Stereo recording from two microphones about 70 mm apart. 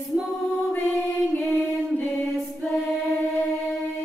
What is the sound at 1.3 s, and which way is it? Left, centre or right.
Music, centre.